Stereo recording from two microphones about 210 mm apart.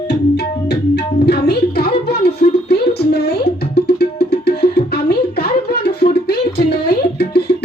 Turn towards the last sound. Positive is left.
turn(degrees=50)  # may be behind; listen again after turning